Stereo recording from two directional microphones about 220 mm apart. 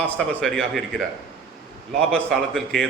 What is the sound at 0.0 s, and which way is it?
A man's voice, 5° left (ahead or behind).